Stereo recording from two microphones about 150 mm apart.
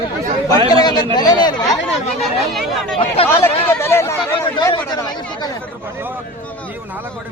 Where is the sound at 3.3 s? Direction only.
15° left (ahead or behind).